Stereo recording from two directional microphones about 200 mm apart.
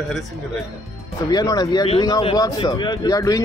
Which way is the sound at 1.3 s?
20° left (ahead or behind).